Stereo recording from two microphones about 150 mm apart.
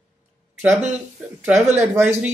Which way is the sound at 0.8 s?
10° right (ahead or behind).